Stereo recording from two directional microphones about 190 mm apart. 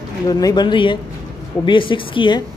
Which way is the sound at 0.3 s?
20° left (ahead or behind).